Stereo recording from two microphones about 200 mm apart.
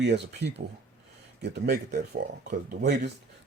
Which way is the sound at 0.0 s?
60° right (ahead or behind).